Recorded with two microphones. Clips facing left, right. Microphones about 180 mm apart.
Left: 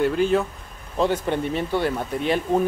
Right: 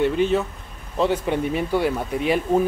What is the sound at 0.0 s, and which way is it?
Speech, centre (ahead or behind).